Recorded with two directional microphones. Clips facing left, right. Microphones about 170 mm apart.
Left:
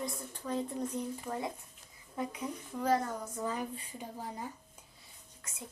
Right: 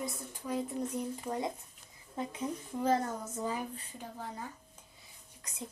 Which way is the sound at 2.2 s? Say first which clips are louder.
Right 1 dB; 25° right (ahead or behind).